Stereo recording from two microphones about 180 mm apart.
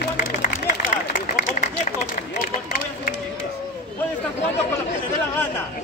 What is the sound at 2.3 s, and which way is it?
Run, 55° left (ahead or behind).